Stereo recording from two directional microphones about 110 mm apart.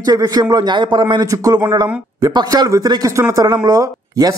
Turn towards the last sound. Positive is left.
turn(degrees=-30)  # may be behind; listen again after turning